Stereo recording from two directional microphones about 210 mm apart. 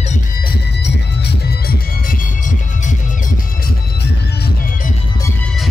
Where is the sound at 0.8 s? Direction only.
50° left (ahead or behind).